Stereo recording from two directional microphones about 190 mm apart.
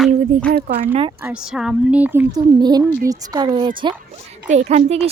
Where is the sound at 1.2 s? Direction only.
5° right (ahead or behind).